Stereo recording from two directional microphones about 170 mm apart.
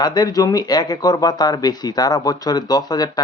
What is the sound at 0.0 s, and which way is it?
Speech, 25° left (ahead or behind).